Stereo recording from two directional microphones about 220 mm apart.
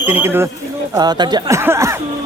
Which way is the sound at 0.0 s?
10° right (ahead or behind).